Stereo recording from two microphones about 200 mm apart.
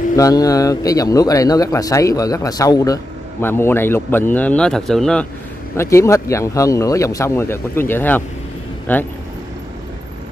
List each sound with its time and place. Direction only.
0.1 s a man's voice: 15° left (ahead or behind)
5.8 s a man's voice: 15° left (ahead or behind)